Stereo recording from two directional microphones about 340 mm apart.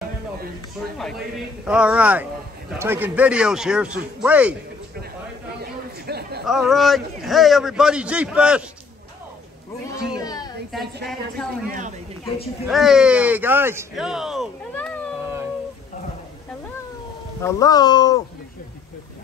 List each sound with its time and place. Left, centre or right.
1.6 s a man's voice: centre
5.6 s chatter: right
6.4 s a man's voice: centre
10.1 s a sound: centre
12.6 s speech: centre
17.4 s speech: centre